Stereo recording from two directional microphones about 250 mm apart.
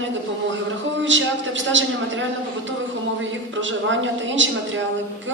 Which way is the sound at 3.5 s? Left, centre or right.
Right.